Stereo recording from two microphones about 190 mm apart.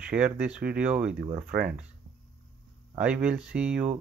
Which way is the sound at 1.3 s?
50° right (ahead or behind).